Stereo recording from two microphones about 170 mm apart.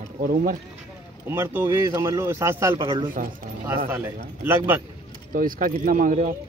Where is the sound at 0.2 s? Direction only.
55° right (ahead or behind).